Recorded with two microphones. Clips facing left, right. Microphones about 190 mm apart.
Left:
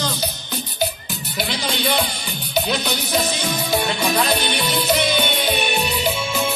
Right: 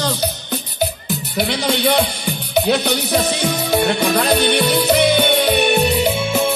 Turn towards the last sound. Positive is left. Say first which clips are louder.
# right 5 dB
turn(degrees=-55)  # may be behind; listen again after turning